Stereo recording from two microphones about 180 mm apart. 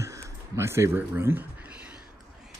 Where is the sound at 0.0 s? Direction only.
15° right (ahead or behind).